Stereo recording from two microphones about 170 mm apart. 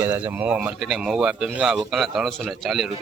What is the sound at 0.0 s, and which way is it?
Speech, 15° right (ahead or behind).